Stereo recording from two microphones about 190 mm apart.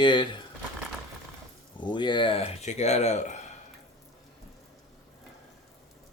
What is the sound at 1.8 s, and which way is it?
Speech, 25° left (ahead or behind).